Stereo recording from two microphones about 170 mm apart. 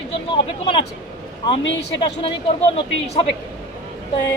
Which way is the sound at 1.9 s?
30° left (ahead or behind).